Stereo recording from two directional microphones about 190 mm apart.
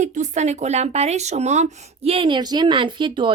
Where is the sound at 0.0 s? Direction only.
40° right (ahead or behind).